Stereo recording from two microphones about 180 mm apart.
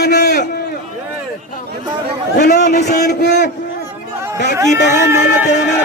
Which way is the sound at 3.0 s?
70° left (ahead or behind).